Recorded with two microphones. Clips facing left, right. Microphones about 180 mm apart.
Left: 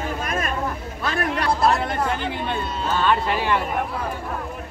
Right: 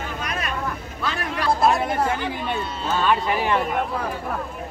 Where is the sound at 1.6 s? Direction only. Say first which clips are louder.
Right 1 dB; 20° right (ahead or behind).